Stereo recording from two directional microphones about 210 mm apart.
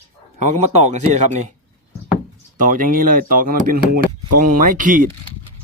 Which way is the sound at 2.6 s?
40° right (ahead or behind).